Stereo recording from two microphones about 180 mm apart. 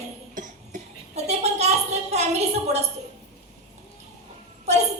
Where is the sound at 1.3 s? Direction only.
35° right (ahead or behind).